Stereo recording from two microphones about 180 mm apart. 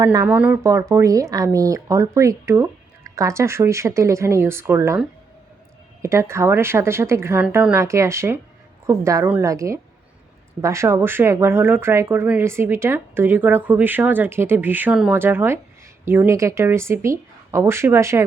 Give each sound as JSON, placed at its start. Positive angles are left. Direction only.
{"t": 0.0, "sound": "speech", "side_deg": -20}
{"t": 0.3, "sound": "speech", "side_deg": -10}
{"t": 6.0, "sound": "speech", "side_deg": -15}